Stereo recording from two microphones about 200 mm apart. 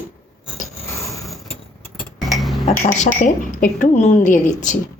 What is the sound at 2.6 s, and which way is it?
Speech, 35° left (ahead or behind).